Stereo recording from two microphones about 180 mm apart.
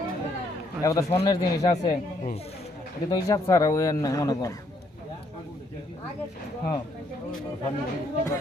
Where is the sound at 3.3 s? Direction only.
20° left (ahead or behind).